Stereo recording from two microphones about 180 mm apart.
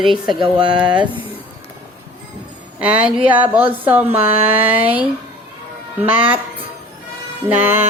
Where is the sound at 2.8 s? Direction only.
5° right (ahead or behind).